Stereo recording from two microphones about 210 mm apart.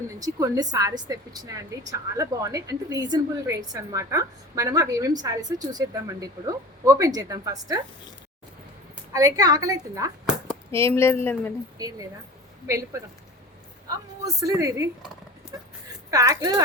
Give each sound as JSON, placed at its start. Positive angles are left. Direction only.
{"t": 0.2, "sound": "a woman's voice", "side_deg": -15}
{"t": 9.1, "sound": "a woman's voice", "side_deg": -15}
{"t": 10.7, "sound": "a woman's voice", "side_deg": 10}
{"t": 11.8, "sound": "a woman's voice", "side_deg": -15}
{"t": 14.4, "sound": "a woman's voice", "side_deg": -15}
{"t": 16.0, "sound": "speech", "side_deg": -15}